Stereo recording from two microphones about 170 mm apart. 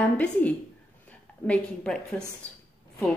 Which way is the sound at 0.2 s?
10° left (ahead or behind).